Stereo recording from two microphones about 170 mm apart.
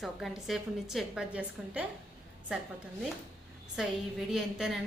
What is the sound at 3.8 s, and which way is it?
Speech, 5° right (ahead or behind).